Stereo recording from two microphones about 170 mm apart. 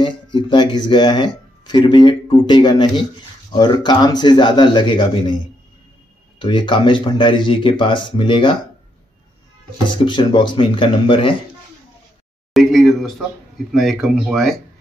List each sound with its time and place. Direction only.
0.5 s speech: 30° left (ahead or behind)
6.4 s speech: 30° left (ahead or behind)
9.8 s speech: 30° left (ahead or behind)
12.5 s a sound: centre (ahead or behind)
13.7 s speech: centre (ahead or behind)